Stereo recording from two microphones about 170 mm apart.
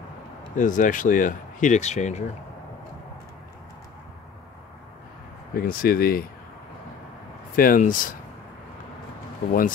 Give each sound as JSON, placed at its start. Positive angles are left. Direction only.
{"t": 0.6, "sound": "speech", "side_deg": 50}
{"t": 5.5, "sound": "speech", "side_deg": 60}
{"t": 7.5, "sound": "speech", "side_deg": 55}